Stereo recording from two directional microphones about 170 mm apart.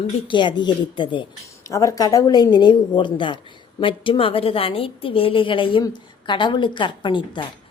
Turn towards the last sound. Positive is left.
turn(degrees=30)  # may be behind; listen again after turning